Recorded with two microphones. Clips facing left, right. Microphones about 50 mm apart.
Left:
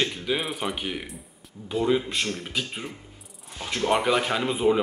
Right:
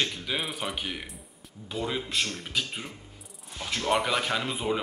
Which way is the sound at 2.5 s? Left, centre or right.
Centre.